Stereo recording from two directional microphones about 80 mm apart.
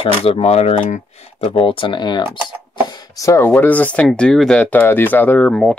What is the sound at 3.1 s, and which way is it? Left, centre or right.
Speech, left.